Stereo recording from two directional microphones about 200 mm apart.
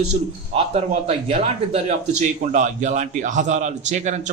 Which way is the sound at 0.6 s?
30° right (ahead or behind).